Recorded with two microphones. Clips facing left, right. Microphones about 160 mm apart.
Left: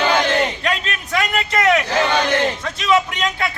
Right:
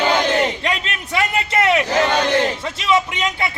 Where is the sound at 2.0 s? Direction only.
5° right (ahead or behind).